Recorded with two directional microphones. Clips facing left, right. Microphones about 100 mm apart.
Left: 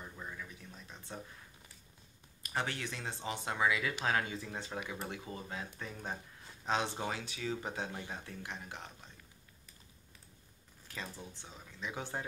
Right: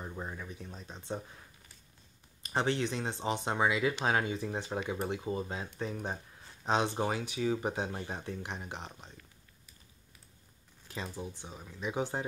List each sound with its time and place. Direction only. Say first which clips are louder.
0.0 s a sound: right 5 dB; 35° right (ahead or behind)
2.4 s speech: right 7 dB; 25° right (ahead or behind)
10.9 s speech: right 5 dB; 20° right (ahead or behind)